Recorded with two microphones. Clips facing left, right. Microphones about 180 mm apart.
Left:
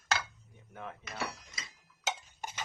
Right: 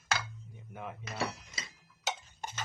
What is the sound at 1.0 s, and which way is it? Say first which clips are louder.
Drawer open or close: right 4 dB; 30° right (ahead or behind).